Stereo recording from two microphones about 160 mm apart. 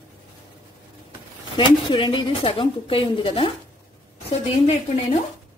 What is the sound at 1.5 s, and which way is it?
A woman's voice, 30° left (ahead or behind).